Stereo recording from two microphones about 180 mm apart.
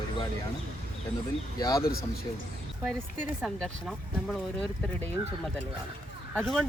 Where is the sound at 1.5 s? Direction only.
20° left (ahead or behind).